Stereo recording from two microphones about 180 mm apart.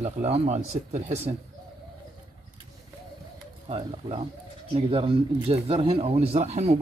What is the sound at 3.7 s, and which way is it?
Speech, 35° right (ahead or behind).